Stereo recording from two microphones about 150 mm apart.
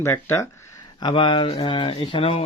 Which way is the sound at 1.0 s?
30° left (ahead or behind).